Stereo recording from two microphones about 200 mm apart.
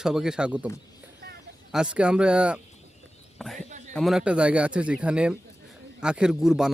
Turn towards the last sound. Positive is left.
turn(degrees=-5)  # may be behind; listen again after turning